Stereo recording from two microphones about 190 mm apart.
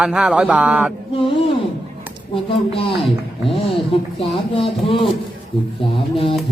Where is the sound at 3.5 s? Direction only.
30° left (ahead or behind).